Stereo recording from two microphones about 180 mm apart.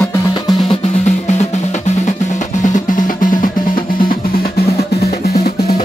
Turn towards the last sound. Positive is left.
turn(degrees=60)  # may be behind; listen again after turning